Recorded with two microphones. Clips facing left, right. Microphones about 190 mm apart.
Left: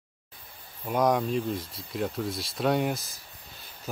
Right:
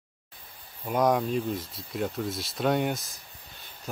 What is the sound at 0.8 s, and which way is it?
Speech, centre (ahead or behind).